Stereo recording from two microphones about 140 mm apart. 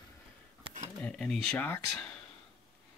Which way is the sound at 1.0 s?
10° left (ahead or behind).